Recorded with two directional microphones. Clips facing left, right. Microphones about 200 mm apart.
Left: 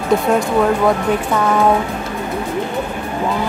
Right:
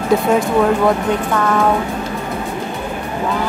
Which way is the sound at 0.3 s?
Centre (ahead or behind).